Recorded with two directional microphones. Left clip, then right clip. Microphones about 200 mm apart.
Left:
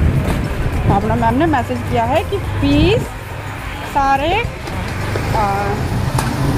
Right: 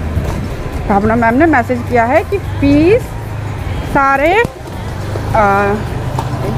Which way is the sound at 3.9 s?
30° right (ahead or behind).